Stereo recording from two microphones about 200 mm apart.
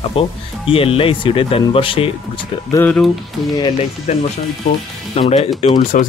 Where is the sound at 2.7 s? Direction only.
10° left (ahead or behind).